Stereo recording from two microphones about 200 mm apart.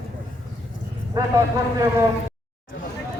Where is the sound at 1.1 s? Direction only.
15° right (ahead or behind).